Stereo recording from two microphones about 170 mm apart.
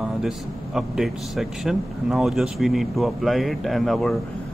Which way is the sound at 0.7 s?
Centre (ahead or behind).